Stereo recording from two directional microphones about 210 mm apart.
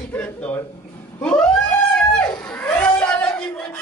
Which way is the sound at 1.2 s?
5° left (ahead or behind).